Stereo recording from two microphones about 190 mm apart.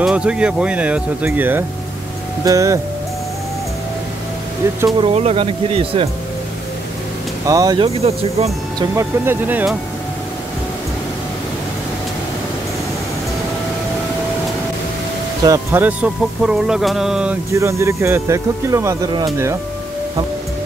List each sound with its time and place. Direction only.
0.0 s speech: 5° right (ahead or behind)
5.0 s speech: 30° right (ahead or behind)
7.4 s speech: 20° right (ahead or behind)
8.9 s speech: 10° right (ahead or behind)
15.4 s speech: 15° right (ahead or behind)